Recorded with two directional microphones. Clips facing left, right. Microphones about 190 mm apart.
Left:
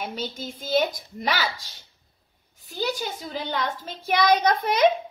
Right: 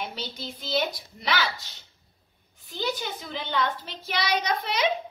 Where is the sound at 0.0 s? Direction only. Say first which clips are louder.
Left 3 dB; 50° left (ahead or behind).